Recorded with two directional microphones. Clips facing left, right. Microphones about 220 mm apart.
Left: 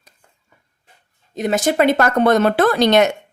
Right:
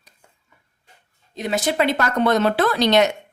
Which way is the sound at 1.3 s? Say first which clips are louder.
Left 5 dB; 45° left (ahead or behind).